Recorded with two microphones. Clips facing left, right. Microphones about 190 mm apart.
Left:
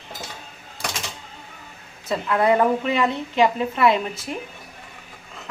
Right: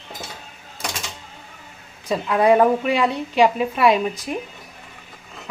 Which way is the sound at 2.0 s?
15° right (ahead or behind).